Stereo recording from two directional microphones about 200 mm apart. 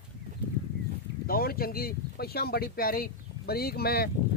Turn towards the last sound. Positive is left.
turn(degrees=50)  # may be behind; listen again after turning